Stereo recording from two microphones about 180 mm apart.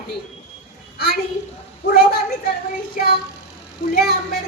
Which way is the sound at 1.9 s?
55° left (ahead or behind).